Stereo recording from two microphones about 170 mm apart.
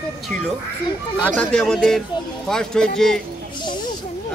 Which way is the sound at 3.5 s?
25° left (ahead or behind).